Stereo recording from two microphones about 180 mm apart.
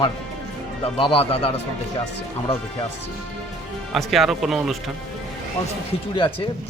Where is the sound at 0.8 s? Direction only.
30° left (ahead or behind).